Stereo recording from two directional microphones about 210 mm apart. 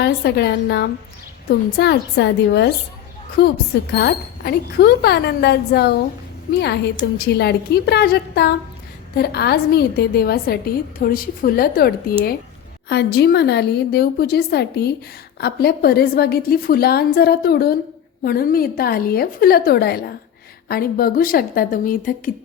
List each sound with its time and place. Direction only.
0.0 s a woman's voice: 50° left (ahead or behind)